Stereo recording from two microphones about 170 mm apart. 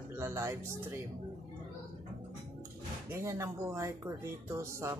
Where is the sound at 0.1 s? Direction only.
15° right (ahead or behind).